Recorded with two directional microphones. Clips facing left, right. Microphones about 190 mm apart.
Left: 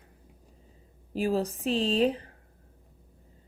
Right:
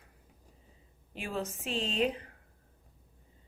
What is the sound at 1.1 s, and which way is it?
Speech, 35° left (ahead or behind).